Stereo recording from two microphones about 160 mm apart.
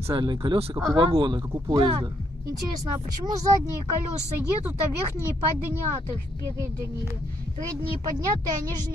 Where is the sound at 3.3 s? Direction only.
25° right (ahead or behind).